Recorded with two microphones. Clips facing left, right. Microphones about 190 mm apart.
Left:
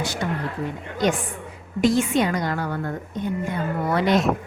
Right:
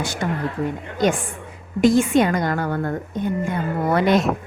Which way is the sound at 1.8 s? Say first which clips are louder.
Right 4 dB; 50° right (ahead or behind).